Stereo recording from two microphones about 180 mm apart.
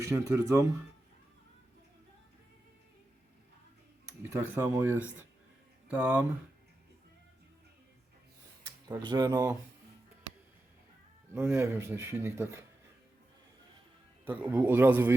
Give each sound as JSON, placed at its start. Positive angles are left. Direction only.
{"t": 0.0, "sound": "speech", "side_deg": -15}
{"t": 4.2, "sound": "speech", "side_deg": -15}
{"t": 8.9, "sound": "speech", "side_deg": -25}
{"t": 11.3, "sound": "speech", "side_deg": -15}
{"t": 14.3, "sound": "speech", "side_deg": -10}